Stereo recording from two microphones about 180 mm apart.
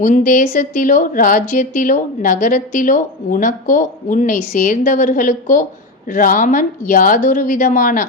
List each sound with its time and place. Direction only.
0.3 s a woman's voice: 50° left (ahead or behind)